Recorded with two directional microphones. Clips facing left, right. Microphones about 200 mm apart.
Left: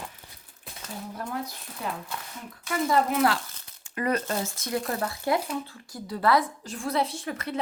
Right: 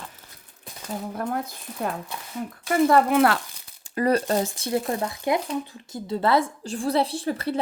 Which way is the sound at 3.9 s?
35° right (ahead or behind).